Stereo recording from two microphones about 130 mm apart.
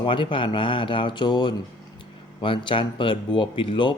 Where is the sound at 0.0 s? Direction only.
40° left (ahead or behind).